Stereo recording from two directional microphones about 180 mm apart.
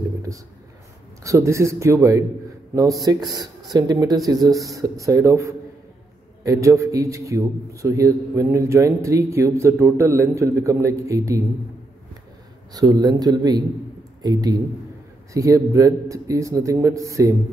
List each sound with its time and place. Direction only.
1.2 s a man's voice: 15° right (ahead or behind)
12.7 s a man's voice: 20° right (ahead or behind)